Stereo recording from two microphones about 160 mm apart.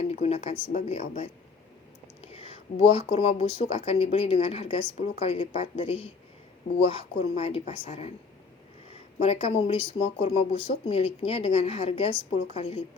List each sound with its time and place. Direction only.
0.0 s a woman's voice: 40° left (ahead or behind)
9.2 s speech: 40° left (ahead or behind)